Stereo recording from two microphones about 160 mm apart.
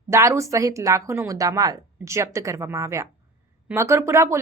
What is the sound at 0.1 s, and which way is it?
A woman's voice, 15° right (ahead or behind).